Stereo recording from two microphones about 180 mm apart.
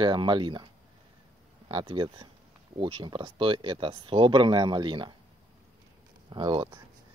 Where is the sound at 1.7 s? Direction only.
30° right (ahead or behind).